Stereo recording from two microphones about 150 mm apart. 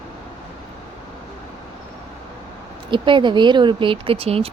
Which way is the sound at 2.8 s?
35° right (ahead or behind).